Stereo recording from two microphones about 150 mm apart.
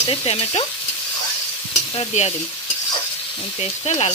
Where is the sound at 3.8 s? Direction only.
40° left (ahead or behind).